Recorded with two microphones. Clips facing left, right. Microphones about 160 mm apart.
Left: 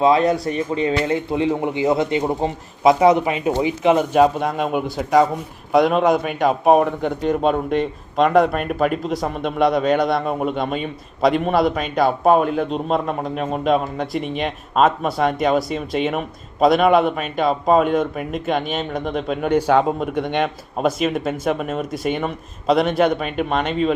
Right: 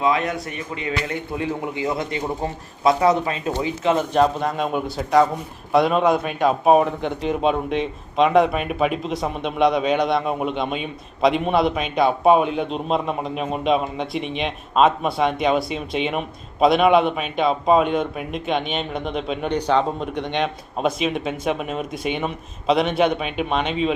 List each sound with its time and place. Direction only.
0.0 s speech: 30° left (ahead or behind); by 4.2 s 15° left (ahead or behind)
4.2 s a man's voice: 5° left (ahead or behind)